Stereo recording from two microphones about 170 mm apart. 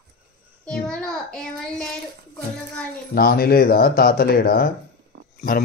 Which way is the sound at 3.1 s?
60° left (ahead or behind).